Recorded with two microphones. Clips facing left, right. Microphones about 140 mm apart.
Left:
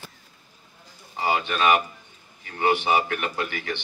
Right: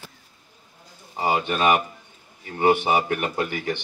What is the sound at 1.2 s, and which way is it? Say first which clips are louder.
Speech: right 2 dB; 40° right (ahead or behind).